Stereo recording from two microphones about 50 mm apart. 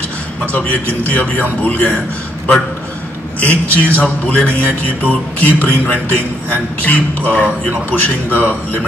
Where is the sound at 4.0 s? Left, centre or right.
Left.